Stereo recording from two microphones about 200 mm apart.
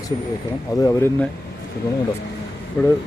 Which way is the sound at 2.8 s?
15° left (ahead or behind).